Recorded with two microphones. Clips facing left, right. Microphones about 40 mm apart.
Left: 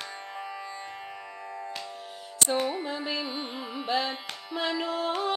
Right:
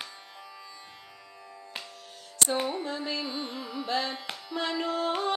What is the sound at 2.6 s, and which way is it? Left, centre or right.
Carnatic music, centre.